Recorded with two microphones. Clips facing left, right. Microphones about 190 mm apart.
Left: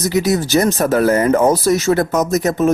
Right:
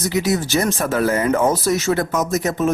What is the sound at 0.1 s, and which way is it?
Speech, 40° left (ahead or behind).